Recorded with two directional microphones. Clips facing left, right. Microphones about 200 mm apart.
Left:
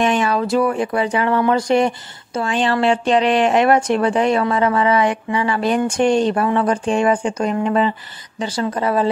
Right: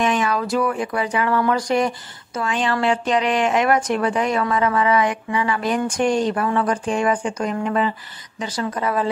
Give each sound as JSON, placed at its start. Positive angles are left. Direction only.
{"t": 0.0, "sound": "a woman's voice", "side_deg": 30}